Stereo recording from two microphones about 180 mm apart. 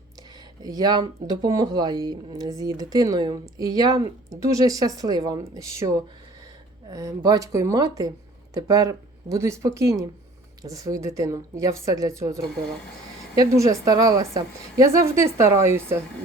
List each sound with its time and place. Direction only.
0.2 s a woman's voice: 20° right (ahead or behind)